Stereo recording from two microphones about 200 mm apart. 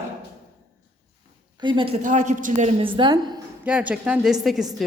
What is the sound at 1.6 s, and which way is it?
A woman's voice, 25° right (ahead or behind).